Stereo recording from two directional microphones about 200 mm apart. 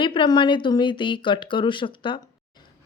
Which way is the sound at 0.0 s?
25° left (ahead or behind).